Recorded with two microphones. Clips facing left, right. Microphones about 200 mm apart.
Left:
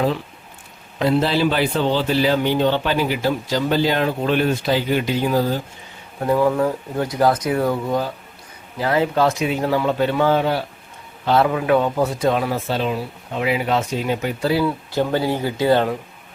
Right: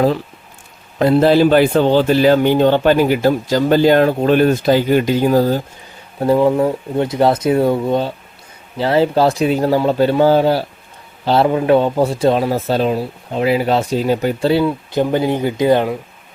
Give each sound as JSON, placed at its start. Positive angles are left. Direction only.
{"t": 0.9, "sound": "a man's voice", "side_deg": -50}
{"t": 6.1, "sound": "a man's voice", "side_deg": -30}